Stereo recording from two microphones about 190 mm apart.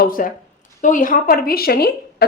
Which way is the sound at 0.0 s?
45° left (ahead or behind).